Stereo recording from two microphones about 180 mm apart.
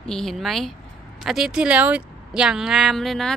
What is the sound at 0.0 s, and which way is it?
Speech, 5° left (ahead or behind).